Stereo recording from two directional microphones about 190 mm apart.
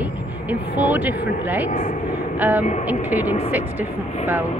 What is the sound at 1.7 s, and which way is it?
Speech, 40° left (ahead or behind).